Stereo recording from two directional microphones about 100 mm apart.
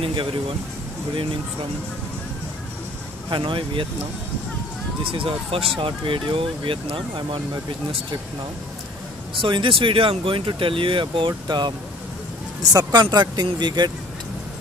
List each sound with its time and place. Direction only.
0.0 s speech: 60° right (ahead or behind)
3.3 s speech: 55° right (ahead or behind)
5.0 s speech: 65° right (ahead or behind)
9.4 s speech: 60° right (ahead or behind)
12.7 s speech: 45° right (ahead or behind)